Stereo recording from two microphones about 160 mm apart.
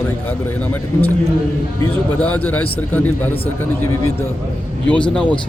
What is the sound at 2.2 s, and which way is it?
Speech, 10° left (ahead or behind).